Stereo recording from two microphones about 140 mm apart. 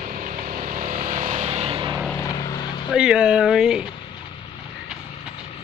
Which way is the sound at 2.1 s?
30° left (ahead or behind).